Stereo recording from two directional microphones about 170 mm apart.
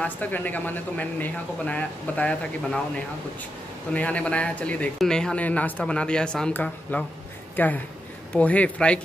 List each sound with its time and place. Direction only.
0.0 s a man's voice: 10° left (ahead or behind)
3.9 s a man's voice: 10° left (ahead or behind)